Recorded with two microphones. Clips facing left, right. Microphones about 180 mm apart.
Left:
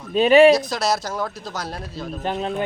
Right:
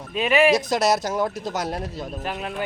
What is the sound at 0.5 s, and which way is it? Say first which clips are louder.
Speech: right 1 dB; 20° right (ahead or behind).